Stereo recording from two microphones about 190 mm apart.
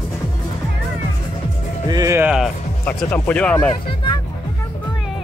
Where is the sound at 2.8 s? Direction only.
10° left (ahead or behind).